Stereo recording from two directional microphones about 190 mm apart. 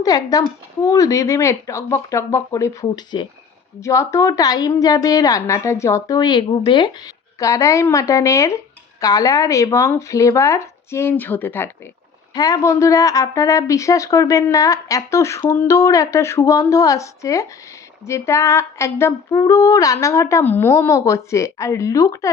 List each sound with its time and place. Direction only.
0.0 s speech: 20° left (ahead or behind)